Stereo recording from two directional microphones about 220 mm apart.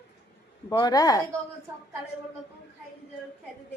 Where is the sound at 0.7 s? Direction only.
15° left (ahead or behind).